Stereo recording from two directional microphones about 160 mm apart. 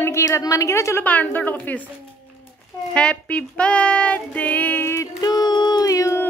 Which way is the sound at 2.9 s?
5° left (ahead or behind).